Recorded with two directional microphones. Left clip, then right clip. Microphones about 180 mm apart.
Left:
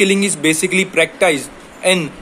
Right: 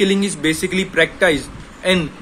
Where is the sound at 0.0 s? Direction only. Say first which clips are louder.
Left 3 dB; 10° right (ahead or behind).